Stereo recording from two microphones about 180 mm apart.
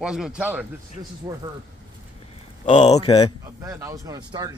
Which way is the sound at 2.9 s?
25° left (ahead or behind).